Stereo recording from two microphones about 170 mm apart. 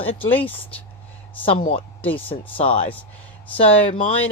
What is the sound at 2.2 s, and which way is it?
Speech, 35° left (ahead or behind).